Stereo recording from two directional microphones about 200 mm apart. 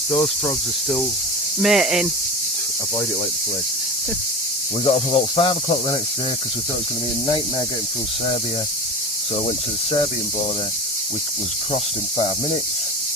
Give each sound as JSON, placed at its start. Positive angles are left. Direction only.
{"t": 0.1, "sound": "speech", "side_deg": 10}
{"t": 1.6, "sound": "speech", "side_deg": 0}
{"t": 4.9, "sound": "speech", "side_deg": 25}
{"t": 11.7, "sound": "speech", "side_deg": 30}